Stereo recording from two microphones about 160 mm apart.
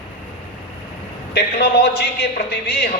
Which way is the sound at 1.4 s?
85° left.